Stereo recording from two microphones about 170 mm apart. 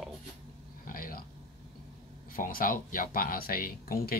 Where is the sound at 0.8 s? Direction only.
55° left (ahead or behind).